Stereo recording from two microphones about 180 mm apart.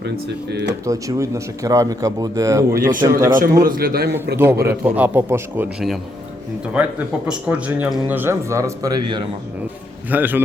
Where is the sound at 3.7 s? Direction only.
55° right (ahead or behind).